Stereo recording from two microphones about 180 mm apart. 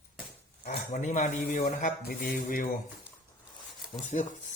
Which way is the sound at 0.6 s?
50° left (ahead or behind).